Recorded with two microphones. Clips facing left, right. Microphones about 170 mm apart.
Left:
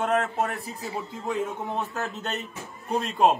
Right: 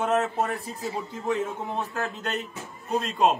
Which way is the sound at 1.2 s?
10° left (ahead or behind).